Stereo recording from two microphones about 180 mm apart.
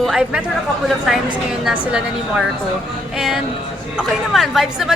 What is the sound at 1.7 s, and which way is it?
A woman's voice, 5° right (ahead or behind).